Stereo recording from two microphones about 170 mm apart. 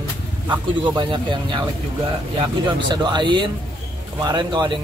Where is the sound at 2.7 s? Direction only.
25° right (ahead or behind).